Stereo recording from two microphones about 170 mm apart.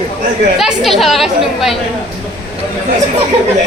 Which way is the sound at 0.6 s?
Centre (ahead or behind).